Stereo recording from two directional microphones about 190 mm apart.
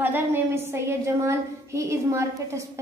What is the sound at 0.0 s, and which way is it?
A woman's voice, 10° right (ahead or behind).